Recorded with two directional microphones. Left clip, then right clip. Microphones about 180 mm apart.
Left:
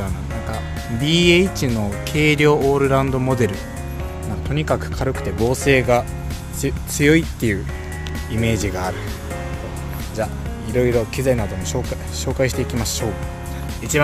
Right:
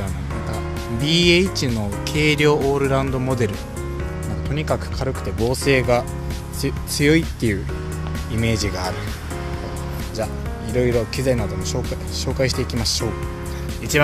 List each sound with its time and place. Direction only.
1.0 s speech: 10° left (ahead or behind)
10.1 s speech: centre (ahead or behind)
13.9 s speech: centre (ahead or behind)